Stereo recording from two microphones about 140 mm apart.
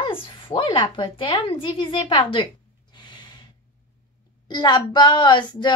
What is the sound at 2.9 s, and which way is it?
Snort, 30° left (ahead or behind).